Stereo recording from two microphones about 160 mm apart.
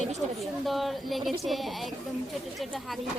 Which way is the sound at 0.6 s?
Centre (ahead or behind).